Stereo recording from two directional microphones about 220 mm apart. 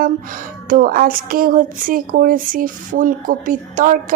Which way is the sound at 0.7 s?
40° right (ahead or behind).